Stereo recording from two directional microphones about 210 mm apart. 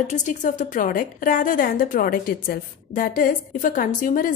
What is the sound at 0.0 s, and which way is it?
A woman's voice, 35° left (ahead or behind).